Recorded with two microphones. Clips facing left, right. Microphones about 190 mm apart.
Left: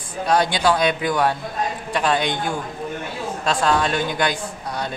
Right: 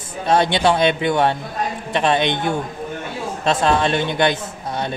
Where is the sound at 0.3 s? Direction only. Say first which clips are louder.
Right 2 dB; 25° right (ahead or behind).